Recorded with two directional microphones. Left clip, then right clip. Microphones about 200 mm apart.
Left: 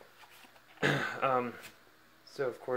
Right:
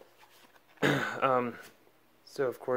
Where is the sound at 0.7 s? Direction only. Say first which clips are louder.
Right 2 dB; 50° right (ahead or behind).